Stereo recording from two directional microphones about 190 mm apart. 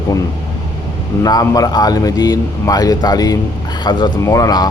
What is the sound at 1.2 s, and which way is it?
A man's voice, 20° left (ahead or behind).